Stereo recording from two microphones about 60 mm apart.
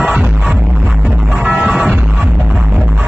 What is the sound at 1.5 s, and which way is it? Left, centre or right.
Music, centre.